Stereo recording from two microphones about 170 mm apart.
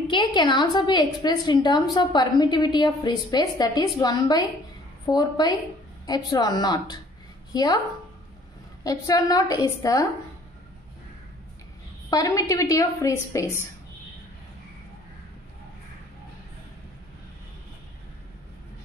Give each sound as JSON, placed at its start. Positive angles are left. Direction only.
{"t": 0.1, "sound": "a woman's voice", "side_deg": 25}
{"t": 8.8, "sound": "a woman's voice", "side_deg": 20}
{"t": 12.1, "sound": "a woman's voice", "side_deg": 20}